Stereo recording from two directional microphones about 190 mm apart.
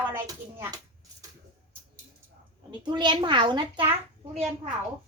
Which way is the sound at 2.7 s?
20° right (ahead or behind).